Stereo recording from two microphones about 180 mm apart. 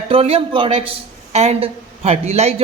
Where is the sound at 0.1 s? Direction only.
30° right (ahead or behind).